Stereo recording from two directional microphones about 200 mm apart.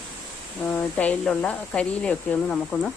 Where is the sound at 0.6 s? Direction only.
5° left (ahead or behind).